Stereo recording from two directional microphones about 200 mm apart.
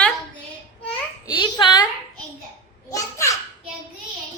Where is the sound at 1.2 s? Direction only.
20° left (ahead or behind).